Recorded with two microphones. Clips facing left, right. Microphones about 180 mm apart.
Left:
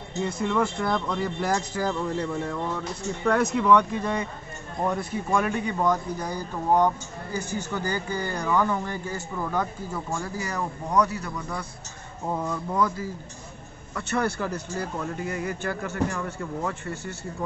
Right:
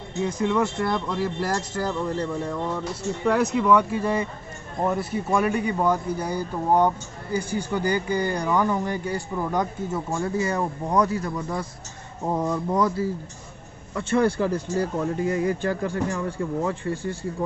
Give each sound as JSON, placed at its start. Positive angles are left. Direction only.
{"t": 0.2, "sound": "speech", "side_deg": 0}
{"t": 13.9, "sound": "speech", "side_deg": -30}